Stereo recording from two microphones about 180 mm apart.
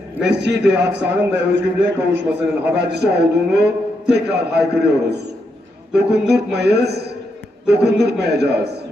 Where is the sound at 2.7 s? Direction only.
65° right (ahead or behind).